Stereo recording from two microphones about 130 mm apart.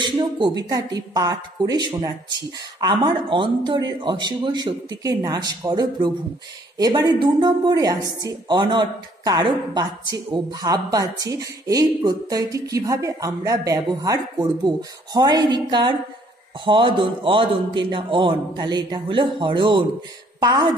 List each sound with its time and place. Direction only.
0.0 s a woman's voice: 35° right (ahead or behind)